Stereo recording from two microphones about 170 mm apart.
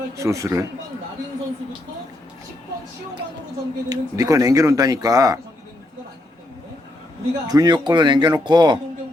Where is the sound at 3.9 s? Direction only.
20° right (ahead or behind).